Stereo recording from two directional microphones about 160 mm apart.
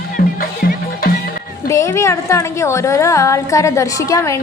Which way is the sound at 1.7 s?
15° left (ahead or behind).